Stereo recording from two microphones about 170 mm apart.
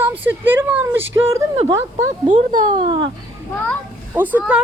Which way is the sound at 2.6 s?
25° right (ahead or behind).